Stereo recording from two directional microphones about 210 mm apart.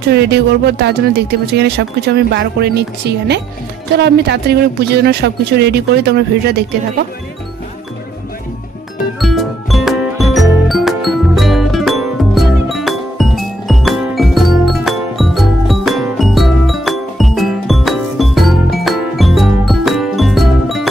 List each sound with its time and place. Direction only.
0.1 s speech: 50° right (ahead or behind)
9.2 s music: centre (ahead or behind)